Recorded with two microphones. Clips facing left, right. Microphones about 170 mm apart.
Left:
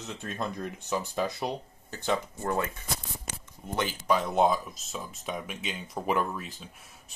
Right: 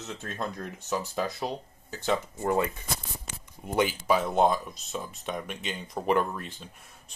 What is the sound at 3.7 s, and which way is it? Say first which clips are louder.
Speech: right 3 dB; 10° right (ahead or behind).